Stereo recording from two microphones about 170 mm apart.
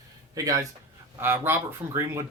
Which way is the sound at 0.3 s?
20° right (ahead or behind).